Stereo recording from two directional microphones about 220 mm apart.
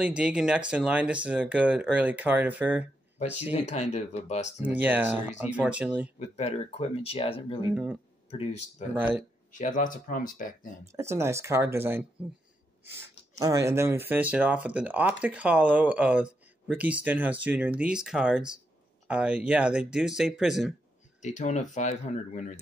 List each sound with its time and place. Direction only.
0.0 s speech: 5° right (ahead or behind)
3.5 s speech: 30° left (ahead or behind)
4.6 s speech: 10° right (ahead or behind)
6.1 s speech: 30° left (ahead or behind)
7.7 s speech: 5° right (ahead or behind)
8.3 s speech: 30° left (ahead or behind)
8.9 s speech: 5° right (ahead or behind)
9.5 s speech: 35° left (ahead or behind)
10.9 s speech: 10° right (ahead or behind)
13.4 s speech: 15° right (ahead or behind)
21.2 s speech: 35° left (ahead or behind)